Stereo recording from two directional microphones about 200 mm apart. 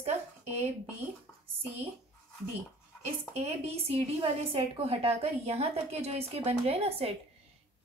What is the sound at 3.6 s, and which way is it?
A woman's voice, 30° right (ahead or behind).